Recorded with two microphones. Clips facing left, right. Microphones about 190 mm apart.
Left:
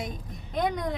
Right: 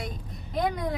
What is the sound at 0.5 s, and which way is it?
Speech, centre (ahead or behind).